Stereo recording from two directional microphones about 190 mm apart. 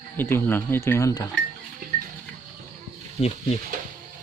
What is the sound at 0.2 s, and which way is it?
Speech, 10° left (ahead or behind).